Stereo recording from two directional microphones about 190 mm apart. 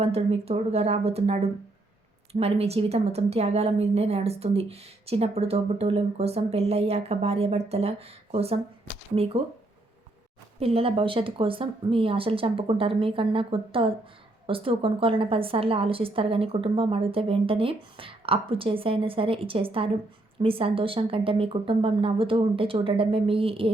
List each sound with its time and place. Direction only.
0.0 s a woman's voice: 30° right (ahead or behind)
10.6 s a woman's voice: 30° right (ahead or behind)